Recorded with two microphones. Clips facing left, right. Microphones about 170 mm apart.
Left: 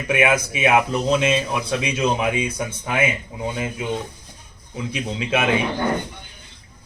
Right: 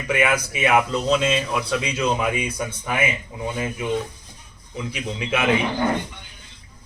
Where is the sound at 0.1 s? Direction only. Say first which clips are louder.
Left 2 dB; 20° left (ahead or behind).